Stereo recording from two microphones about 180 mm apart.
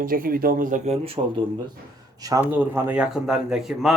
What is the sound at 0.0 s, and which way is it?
Speech, 50° right (ahead or behind).